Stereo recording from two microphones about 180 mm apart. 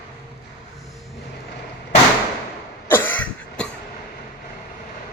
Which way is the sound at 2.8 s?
10° left (ahead or behind).